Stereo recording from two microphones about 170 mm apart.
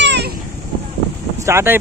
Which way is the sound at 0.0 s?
90° right.